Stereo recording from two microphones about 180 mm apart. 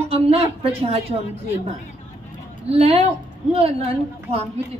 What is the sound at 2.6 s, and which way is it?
A woman's voice, 35° right (ahead or behind).